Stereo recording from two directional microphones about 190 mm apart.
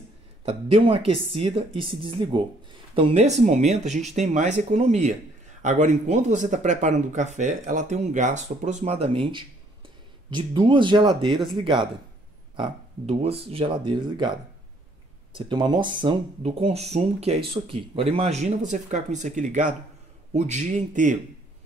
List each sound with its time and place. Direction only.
0.5 s speech: 25° right (ahead or behind)
15.3 s speech: 25° right (ahead or behind); by 21.2 s 40° right (ahead or behind)